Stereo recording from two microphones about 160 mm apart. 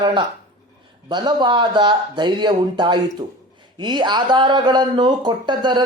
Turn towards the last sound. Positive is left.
turn(degrees=-30)  # may be behind; listen again after turning